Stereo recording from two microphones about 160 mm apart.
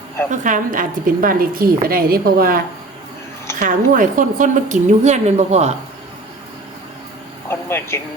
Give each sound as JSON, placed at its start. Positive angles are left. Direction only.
{"t": 0.3, "sound": "a woman's voice", "side_deg": -55}
{"t": 3.6, "sound": "a woman's voice", "side_deg": -55}
{"t": 7.4, "sound": "a sound", "side_deg": 15}